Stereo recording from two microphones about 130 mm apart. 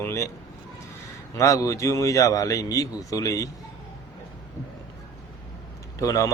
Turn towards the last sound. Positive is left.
turn(degrees=25)  # may be behind; listen again after turning